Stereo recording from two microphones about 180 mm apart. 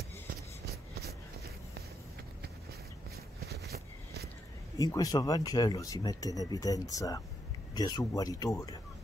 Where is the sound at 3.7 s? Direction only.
55° right (ahead or behind).